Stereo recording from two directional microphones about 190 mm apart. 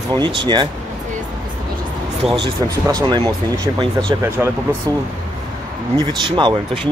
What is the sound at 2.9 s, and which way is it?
Speech, 25° right (ahead or behind).